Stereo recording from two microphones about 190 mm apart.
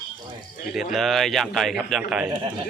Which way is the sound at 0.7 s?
Centre (ahead or behind).